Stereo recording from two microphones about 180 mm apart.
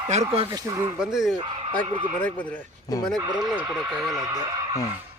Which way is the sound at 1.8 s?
30° right (ahead or behind).